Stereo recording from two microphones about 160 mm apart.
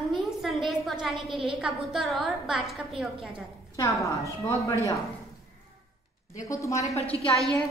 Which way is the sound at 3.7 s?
20° left (ahead or behind).